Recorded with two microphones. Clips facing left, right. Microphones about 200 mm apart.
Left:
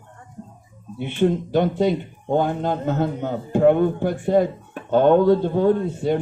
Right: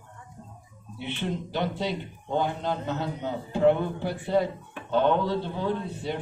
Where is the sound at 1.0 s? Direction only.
50° left (ahead or behind).